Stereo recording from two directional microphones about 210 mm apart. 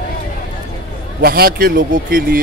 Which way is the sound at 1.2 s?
45° right (ahead or behind).